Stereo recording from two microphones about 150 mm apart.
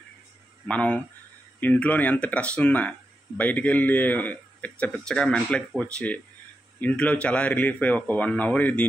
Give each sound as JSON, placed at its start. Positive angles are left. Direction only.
{"t": 0.7, "sound": "speech", "side_deg": 10}